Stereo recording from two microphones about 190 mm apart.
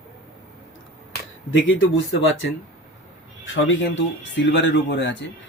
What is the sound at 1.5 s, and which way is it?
Speech, 80° left.